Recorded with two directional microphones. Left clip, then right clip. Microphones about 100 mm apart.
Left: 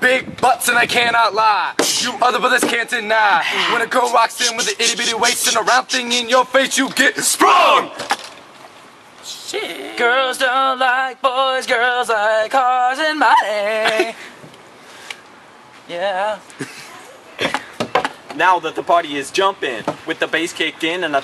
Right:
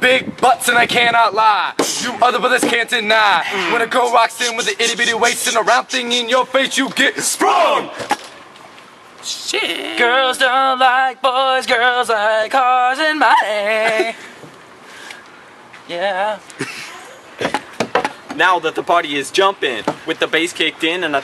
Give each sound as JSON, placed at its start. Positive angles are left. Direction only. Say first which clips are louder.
{"t": 0.0, "sound": "music", "louder": "right 2 dB", "side_deg": 0}
{"t": 1.8, "sound": "a sound", "louder": "left 1 dB", "side_deg": 15}
{"t": 2.1, "sound": "music", "louder": "right 2 dB", "side_deg": 5}
{"t": 3.4, "sound": "speech", "louder": "even", "side_deg": 20}
{"t": 3.8, "sound": "music", "louder": "right 3 dB", "side_deg": 5}
{"t": 7.3, "sound": "speech", "louder": "left 3 dB", "side_deg": 20}
{"t": 9.5, "sound": "speech", "louder": "right 5 dB", "side_deg": -15}
{"t": 9.9, "sound": "music", "louder": "right 2 dB", "side_deg": 0}
{"t": 15.9, "sound": "music", "louder": "right 1 dB", "side_deg": 0}
{"t": 16.5, "sound": "a sound", "louder": "right 5 dB", "side_deg": -15}
{"t": 18.4, "sound": "music", "louder": "right 1 dB", "side_deg": -5}